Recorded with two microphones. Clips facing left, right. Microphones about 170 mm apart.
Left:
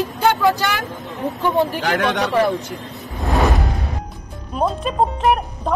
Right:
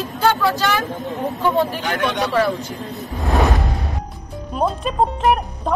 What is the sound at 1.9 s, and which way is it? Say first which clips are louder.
Speech: left 2 dB; 75° left (ahead or behind).